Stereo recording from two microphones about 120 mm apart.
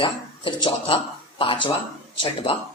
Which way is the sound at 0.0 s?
45° left (ahead or behind).